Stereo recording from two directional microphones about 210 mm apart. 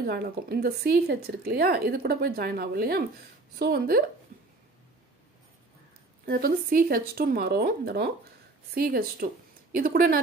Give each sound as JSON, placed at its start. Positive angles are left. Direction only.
{"t": 0.0, "sound": "speech", "side_deg": -45}
{"t": 6.2, "sound": "speech", "side_deg": -45}